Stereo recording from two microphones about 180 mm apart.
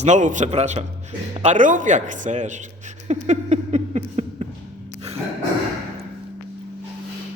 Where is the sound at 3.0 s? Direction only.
40° right (ahead or behind).